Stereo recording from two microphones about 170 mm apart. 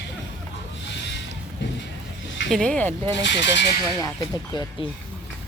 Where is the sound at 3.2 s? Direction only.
90° left.